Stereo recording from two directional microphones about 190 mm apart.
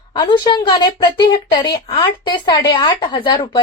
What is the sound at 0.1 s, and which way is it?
A woman's voice, 25° left (ahead or behind).